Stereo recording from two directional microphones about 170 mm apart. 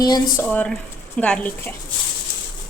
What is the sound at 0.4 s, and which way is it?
Speech, 5° left (ahead or behind).